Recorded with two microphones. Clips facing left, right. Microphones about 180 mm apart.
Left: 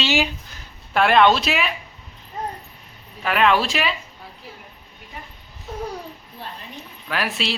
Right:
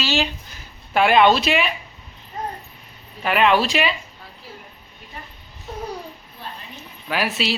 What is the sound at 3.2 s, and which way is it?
Speech, centre (ahead or behind).